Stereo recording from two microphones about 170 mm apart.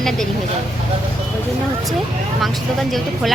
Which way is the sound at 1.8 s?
Centre (ahead or behind).